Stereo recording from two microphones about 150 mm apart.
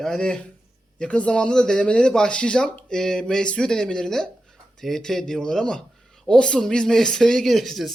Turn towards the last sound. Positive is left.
turn(degrees=0)  # may be behind; listen again after turning